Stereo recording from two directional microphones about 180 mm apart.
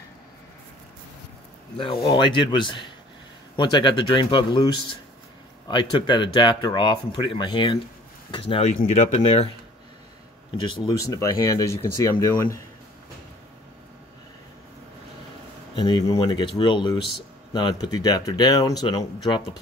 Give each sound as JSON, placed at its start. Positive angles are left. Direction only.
{"t": 2.0, "sound": "speech", "side_deg": 25}
{"t": 10.9, "sound": "speech", "side_deg": 20}
{"t": 15.7, "sound": "speech", "side_deg": 25}